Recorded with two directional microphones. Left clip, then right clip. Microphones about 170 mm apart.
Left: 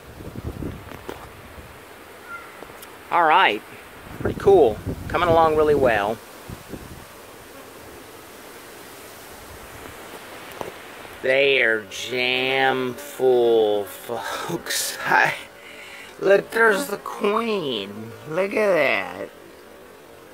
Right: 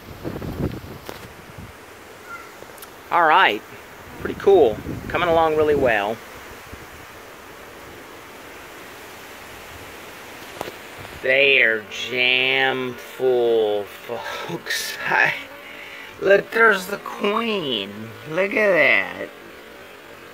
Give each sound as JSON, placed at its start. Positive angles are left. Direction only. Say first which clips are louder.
{"t": 3.1, "sound": "speech", "louder": "right 1 dB", "side_deg": 0}
{"t": 11.2, "sound": "speech", "louder": "right 2 dB", "side_deg": 25}
{"t": 16.3, "sound": "speech", "louder": "right 2 dB", "side_deg": 10}